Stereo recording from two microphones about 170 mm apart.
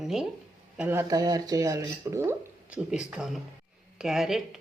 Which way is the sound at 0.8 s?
15° right (ahead or behind).